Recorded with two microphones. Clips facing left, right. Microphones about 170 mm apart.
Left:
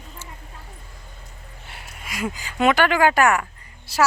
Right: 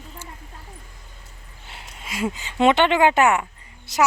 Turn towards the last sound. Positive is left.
turn(degrees=-20)  # may be behind; listen again after turning